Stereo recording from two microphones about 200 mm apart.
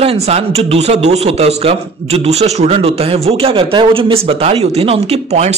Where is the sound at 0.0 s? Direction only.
30° right (ahead or behind).